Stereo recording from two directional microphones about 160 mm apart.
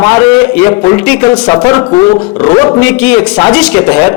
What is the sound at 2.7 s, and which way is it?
A man's voice, 10° left (ahead or behind).